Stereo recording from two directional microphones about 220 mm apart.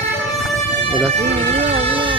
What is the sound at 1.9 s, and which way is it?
Music, 25° right (ahead or behind).